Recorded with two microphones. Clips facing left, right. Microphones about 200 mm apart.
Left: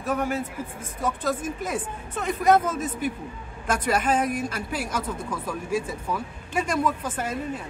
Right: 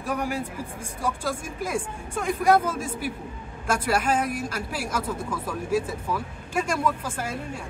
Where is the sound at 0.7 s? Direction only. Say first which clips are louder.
Left 1 dB; 10° right (ahead or behind).